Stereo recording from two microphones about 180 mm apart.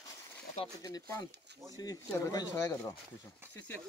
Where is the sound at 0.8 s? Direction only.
20° left (ahead or behind).